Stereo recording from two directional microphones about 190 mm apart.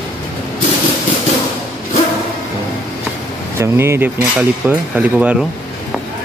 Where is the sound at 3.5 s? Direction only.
15° right (ahead or behind).